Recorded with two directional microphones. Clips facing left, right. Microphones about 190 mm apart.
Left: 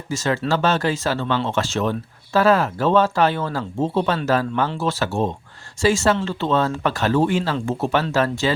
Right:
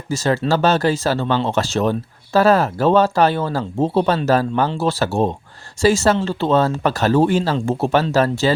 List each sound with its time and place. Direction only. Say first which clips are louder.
0.1 s speech: right 3 dB; 35° right (ahead or behind)